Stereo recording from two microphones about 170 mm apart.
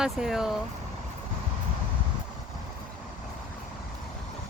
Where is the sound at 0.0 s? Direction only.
5° right (ahead or behind).